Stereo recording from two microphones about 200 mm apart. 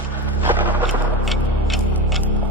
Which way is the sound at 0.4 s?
5° right (ahead or behind).